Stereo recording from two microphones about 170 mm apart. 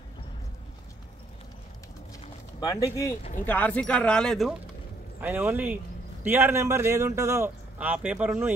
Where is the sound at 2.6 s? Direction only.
20° left (ahead or behind).